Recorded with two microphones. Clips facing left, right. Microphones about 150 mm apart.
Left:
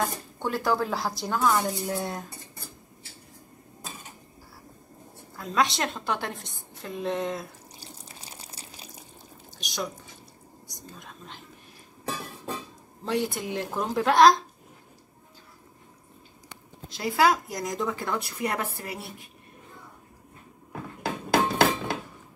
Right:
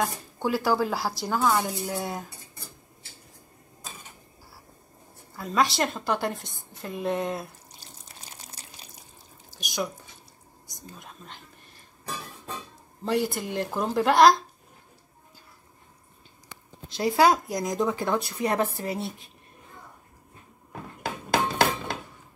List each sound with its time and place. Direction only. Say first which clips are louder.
0.0 s speech: right 2 dB; 5° right (ahead or behind)
5.3 s speech: right 1 dB; centre (ahead or behind)
9.6 s drip: right 3 dB; 10° right (ahead or behind)
10.9 s speech: even; centre (ahead or behind)
13.0 s speech: right 2 dB; centre (ahead or behind)
16.9 s speech: right 2 dB; 30° right (ahead or behind)
17.5 s speech: right 4 dB; 15° right (ahead or behind)
21.0 s a sound: left 2 dB; centre (ahead or behind)